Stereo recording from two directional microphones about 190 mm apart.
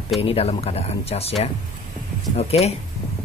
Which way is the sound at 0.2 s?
30° left (ahead or behind).